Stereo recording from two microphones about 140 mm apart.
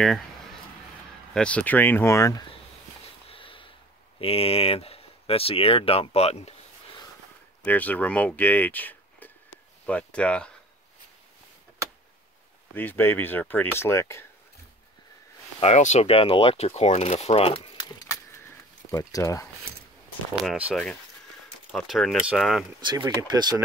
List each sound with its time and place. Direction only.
0.0 s a sound: centre (ahead or behind)
1.3 s speech: 10° left (ahead or behind)
3.3 s sniff: 40° left (ahead or behind)
4.2 s speech: 45° left (ahead or behind)
7.6 s speech: 10° left (ahead or behind)
12.7 s speech: 15° left (ahead or behind)
15.6 s speech: 55° left (ahead or behind); by 19.5 s 20° left (ahead or behind)
20.3 s speech: 5° right (ahead or behind)
22.8 s speech: 35° right (ahead or behind)